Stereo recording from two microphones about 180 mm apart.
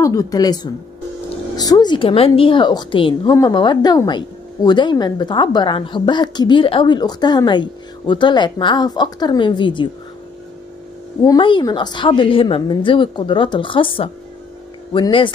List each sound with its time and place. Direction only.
0.0 s a woman's voice: 20° left (ahead or behind)
11.2 s a woman's voice: 25° left (ahead or behind)